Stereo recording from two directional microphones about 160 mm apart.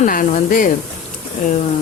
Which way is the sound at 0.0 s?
55° left (ahead or behind).